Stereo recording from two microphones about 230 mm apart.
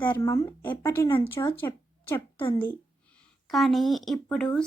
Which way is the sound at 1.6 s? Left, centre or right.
Centre.